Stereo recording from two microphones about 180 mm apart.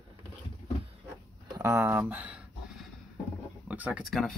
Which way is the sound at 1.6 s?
15° right (ahead or behind).